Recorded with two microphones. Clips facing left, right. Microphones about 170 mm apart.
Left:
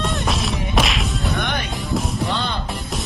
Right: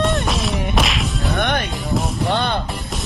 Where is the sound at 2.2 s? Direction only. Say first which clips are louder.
Right 4 dB; 60° right (ahead or behind).